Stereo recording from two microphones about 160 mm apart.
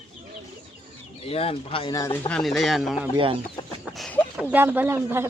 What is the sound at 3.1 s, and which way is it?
Speech, 35° right (ahead or behind).